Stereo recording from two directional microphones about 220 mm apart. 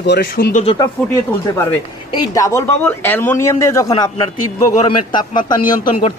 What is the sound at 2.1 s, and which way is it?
A man's voice, 15° left (ahead or behind).